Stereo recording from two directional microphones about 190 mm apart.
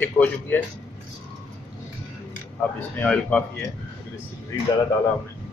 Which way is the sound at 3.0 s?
10° left (ahead or behind).